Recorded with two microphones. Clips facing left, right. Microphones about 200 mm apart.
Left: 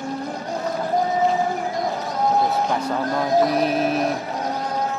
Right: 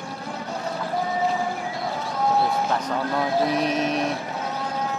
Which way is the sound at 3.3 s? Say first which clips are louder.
Left 6 dB; 40° left (ahead or behind).